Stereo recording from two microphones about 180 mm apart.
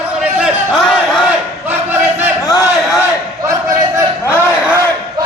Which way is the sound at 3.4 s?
15° right (ahead or behind).